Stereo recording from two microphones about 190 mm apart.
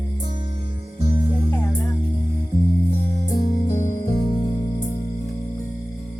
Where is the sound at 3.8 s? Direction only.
45° left (ahead or behind).